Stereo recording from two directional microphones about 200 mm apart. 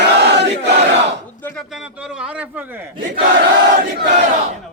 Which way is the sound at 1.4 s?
10° left (ahead or behind).